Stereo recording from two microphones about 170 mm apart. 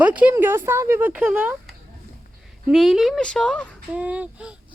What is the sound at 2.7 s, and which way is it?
Speech, centre (ahead or behind).